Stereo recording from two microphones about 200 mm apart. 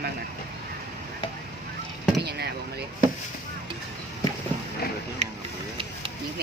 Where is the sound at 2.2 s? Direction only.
55° right (ahead or behind).